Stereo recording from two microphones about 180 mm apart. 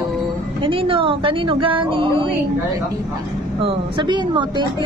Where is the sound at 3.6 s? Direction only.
25° right (ahead or behind).